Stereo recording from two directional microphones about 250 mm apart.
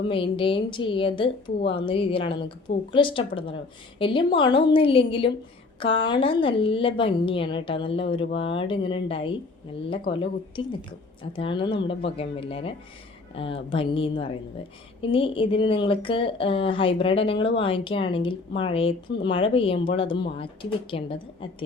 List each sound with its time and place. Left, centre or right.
0.1 s a woman's voice: left